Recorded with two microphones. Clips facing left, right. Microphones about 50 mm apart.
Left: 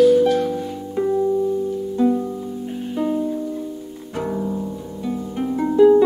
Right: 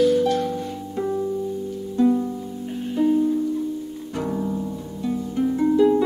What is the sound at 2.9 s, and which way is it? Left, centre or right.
Music, centre.